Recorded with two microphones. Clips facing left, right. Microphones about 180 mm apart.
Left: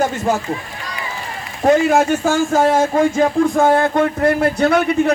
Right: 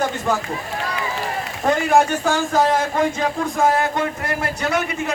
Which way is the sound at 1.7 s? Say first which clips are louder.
Left 4 dB; 45° left (ahead or behind).